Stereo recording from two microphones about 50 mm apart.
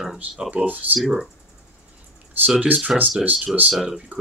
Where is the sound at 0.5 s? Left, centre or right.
Right.